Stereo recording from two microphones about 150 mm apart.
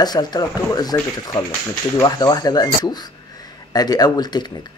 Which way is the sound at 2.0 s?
25° left (ahead or behind).